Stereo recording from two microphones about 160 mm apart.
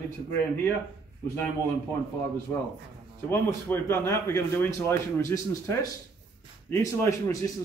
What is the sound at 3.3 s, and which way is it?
A man's voice, 15° left (ahead or behind).